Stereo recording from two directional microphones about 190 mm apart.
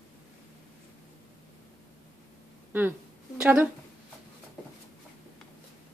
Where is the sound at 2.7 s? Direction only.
10° right (ahead or behind).